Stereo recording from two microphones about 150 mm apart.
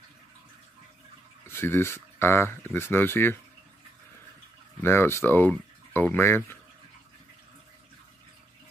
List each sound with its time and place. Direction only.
1.5 s speech: 15° left (ahead or behind)
4.8 s speech: 15° left (ahead or behind)